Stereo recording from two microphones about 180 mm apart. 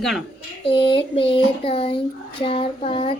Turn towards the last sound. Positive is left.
turn(degrees=30)  # may be behind; listen again after turning